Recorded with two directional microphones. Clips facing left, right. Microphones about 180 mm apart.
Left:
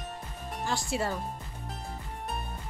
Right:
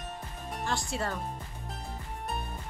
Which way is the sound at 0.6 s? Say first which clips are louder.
Left 2 dB; 5° left (ahead or behind).